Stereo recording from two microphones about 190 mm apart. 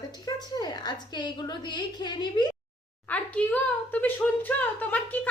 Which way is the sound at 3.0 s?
10° left (ahead or behind).